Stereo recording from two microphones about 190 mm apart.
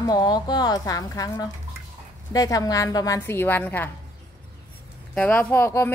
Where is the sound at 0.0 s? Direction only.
20° left (ahead or behind).